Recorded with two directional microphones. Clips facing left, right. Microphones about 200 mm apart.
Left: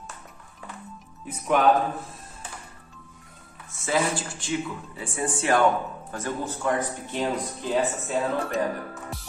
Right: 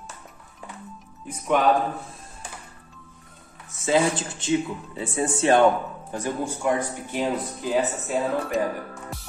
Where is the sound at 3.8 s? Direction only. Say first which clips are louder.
Right 4 dB; 20° right (ahead or behind).